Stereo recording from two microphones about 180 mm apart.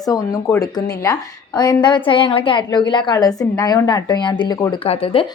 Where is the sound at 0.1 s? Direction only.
20° left (ahead or behind).